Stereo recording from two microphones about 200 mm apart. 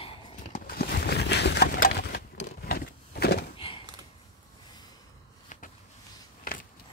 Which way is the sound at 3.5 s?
25° left (ahead or behind).